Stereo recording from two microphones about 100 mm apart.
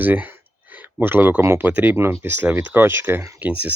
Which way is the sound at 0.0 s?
20° right (ahead or behind).